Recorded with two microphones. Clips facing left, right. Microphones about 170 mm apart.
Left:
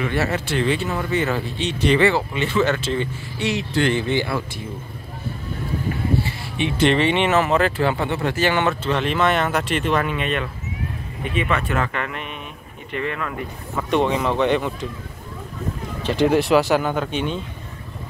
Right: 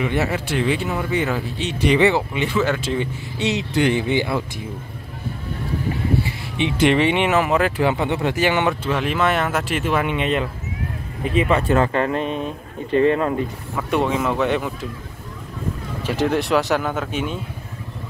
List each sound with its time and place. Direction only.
0.0 s speech: 15° right (ahead or behind)
2.0 s speech: 20° right (ahead or behind)
6.2 s speech: 15° right (ahead or behind)
10.0 s speech: 25° right (ahead or behind)
13.7 s speech: 5° right (ahead or behind)
16.0 s speech: 5° right (ahead or behind)